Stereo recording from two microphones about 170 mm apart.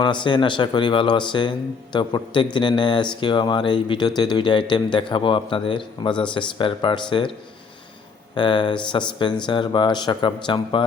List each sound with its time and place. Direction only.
0.0 s speech: 25° left (ahead or behind)
8.4 s speech: 30° left (ahead or behind)